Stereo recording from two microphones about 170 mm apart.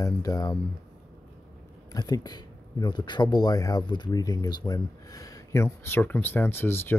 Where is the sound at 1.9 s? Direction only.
20° left (ahead or behind).